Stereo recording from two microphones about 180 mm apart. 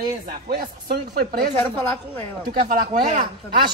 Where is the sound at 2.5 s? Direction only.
55° right (ahead or behind).